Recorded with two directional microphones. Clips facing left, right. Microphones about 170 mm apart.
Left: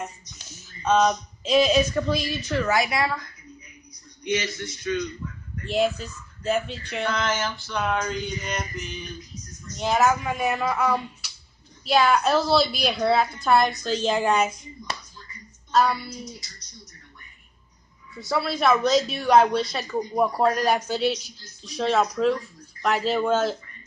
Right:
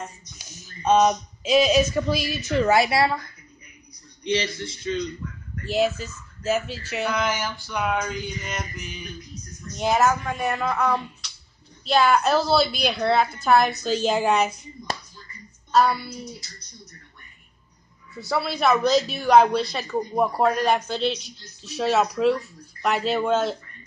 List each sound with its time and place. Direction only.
0.4 s a sound: 15° right (ahead or behind)
1.5 s speech: 5° right (ahead or behind)
2.5 s speech: 25° right (ahead or behind)
4.3 s speech: 30° right (ahead or behind)
5.7 s speech: centre (ahead or behind)
15.7 s a woman's voice: centre (ahead or behind)
16.1 s speech: 60° right (ahead or behind)
18.2 s speech: centre (ahead or behind)